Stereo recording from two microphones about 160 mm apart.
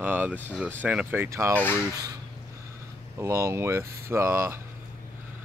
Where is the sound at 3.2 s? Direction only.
20° right (ahead or behind).